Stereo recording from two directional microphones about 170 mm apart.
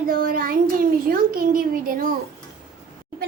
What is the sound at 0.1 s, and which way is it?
A child's voice, 60° right (ahead or behind).